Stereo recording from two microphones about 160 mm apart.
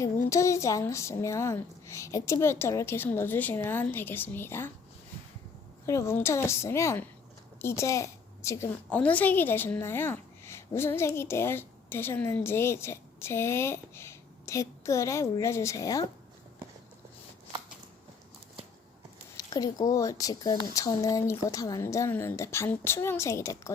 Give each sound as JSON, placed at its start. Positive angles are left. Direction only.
{"t": 0.0, "sound": "a woman's voice", "side_deg": 20}
{"t": 5.8, "sound": "a woman's voice", "side_deg": 20}
{"t": 19.4, "sound": "speech", "side_deg": 25}